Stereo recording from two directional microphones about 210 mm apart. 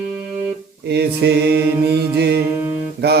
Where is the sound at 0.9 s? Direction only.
50° right (ahead or behind).